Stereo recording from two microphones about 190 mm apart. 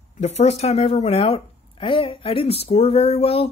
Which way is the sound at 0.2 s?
35° left (ahead or behind).